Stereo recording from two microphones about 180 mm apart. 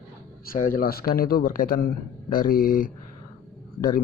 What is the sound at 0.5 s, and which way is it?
A man's voice, 50° left (ahead or behind).